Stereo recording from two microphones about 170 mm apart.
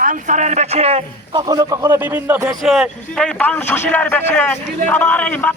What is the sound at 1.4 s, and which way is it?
A man's voice, 20° right (ahead or behind).